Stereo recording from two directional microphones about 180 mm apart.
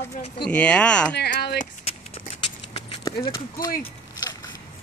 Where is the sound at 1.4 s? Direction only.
60° left (ahead or behind).